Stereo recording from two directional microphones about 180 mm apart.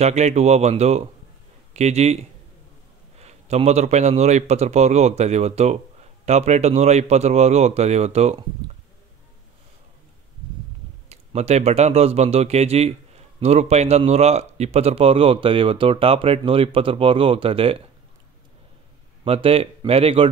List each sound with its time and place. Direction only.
0.0 s speech: 40° right (ahead or behind)
3.2 s speech: 35° right (ahead or behind)
11.1 s speech: 35° right (ahead or behind)
19.2 s speech: 30° right (ahead or behind)